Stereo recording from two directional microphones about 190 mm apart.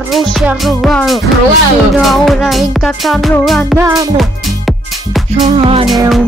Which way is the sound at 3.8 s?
15° right (ahead or behind).